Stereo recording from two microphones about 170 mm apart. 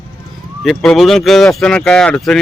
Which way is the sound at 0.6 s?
Centre (ahead or behind).